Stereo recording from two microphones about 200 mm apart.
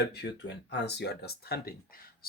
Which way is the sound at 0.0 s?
55° left (ahead or behind).